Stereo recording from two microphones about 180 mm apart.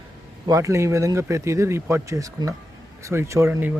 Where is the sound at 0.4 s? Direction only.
20° right (ahead or behind).